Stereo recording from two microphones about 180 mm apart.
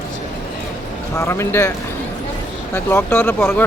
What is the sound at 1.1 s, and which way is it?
Speech, 15° left (ahead or behind).